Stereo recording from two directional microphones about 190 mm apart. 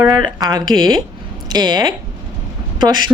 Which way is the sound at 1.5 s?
20° right (ahead or behind).